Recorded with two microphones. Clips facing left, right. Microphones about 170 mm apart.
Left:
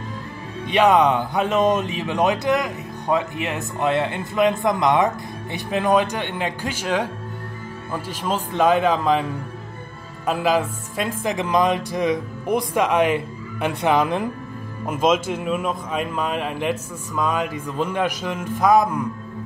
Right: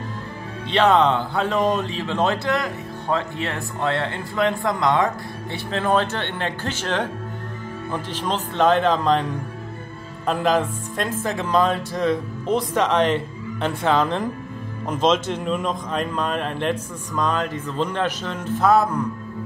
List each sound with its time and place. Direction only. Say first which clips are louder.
0.7 s speech: left 1 dB; 15° left (ahead or behind)